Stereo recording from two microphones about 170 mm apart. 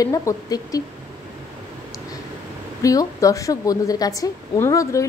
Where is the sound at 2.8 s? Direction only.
20° left (ahead or behind).